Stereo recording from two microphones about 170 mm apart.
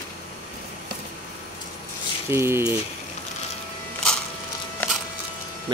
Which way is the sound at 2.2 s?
15° right (ahead or behind).